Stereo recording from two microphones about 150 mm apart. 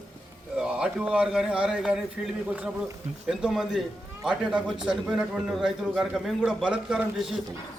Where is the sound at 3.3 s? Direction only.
5° right (ahead or behind).